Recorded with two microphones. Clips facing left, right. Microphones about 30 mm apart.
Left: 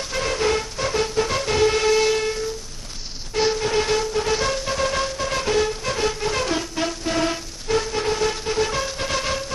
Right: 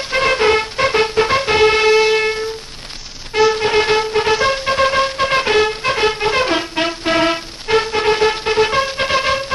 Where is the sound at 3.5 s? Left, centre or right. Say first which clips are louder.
Right 6 dB; right.